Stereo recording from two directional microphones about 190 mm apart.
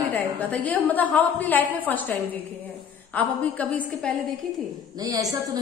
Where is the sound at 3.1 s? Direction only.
10° left (ahead or behind).